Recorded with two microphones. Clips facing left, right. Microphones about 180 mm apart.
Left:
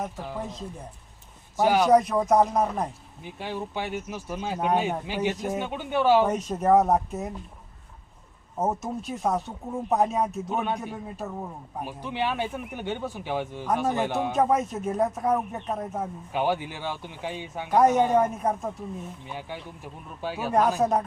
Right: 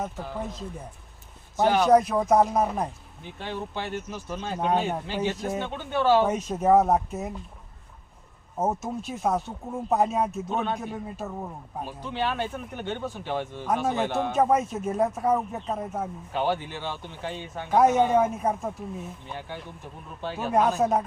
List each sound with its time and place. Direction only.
1.5 s speech: 10° left (ahead or behind)
1.9 s speech: centre (ahead or behind)
3.3 s speech: 10° left (ahead or behind)
6.2 s speech: centre (ahead or behind)
8.5 s speech: centre (ahead or behind)
10.5 s speech: 10° left (ahead or behind)
10.8 s speech: centre (ahead or behind)
11.8 s speech: 15° left (ahead or behind)
14.3 s speech: centre (ahead or behind)
16.3 s speech: 15° left (ahead or behind)
17.7 s speech: 5° right (ahead or behind)
19.3 s speech: 10° left (ahead or behind)
20.7 s speech: 5° right (ahead or behind)